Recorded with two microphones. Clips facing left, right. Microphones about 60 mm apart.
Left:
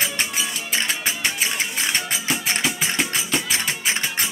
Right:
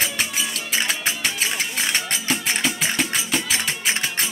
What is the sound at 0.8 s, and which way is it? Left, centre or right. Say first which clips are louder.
Music: even; centre.